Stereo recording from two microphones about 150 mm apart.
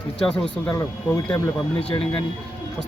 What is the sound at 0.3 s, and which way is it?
Speech, 5° left (ahead or behind).